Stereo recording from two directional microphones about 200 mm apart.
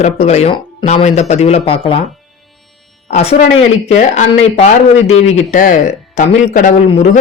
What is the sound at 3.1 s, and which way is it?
Speech, 30° left (ahead or behind).